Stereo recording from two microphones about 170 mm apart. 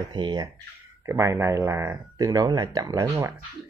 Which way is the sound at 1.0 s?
15° right (ahead or behind).